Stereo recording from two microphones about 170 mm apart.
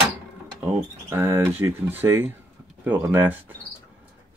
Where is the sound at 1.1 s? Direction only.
15° right (ahead or behind).